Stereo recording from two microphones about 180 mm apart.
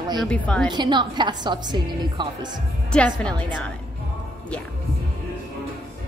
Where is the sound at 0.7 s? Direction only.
25° right (ahead or behind).